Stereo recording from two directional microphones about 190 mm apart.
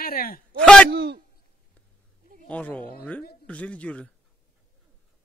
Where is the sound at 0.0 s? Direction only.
50° left (ahead or behind).